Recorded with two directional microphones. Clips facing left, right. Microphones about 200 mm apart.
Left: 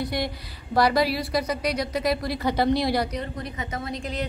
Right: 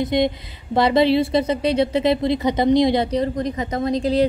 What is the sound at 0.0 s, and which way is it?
A woman's voice, 20° right (ahead or behind).